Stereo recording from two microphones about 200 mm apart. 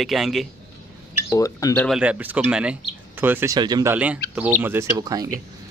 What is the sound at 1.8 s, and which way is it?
Speech, centre (ahead or behind).